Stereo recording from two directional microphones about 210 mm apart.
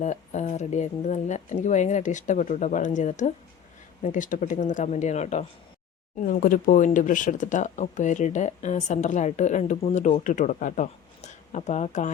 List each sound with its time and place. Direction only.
0.0 s speech: 35° left (ahead or behind)